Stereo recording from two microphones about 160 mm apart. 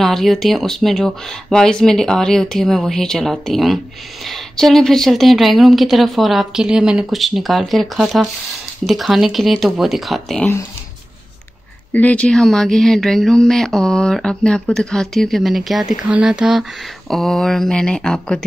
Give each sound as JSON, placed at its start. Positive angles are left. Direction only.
{"t": 0.0, "sound": "speech", "side_deg": 0}
{"t": 11.9, "sound": "speech", "side_deg": 10}